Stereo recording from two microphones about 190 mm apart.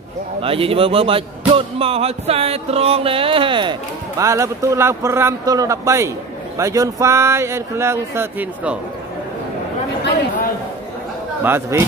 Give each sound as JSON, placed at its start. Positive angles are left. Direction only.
{"t": 0.4, "sound": "speech", "side_deg": -30}
{"t": 11.4, "sound": "speech", "side_deg": -10}